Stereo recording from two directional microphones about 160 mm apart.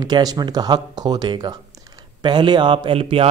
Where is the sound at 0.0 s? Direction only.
25° right (ahead or behind).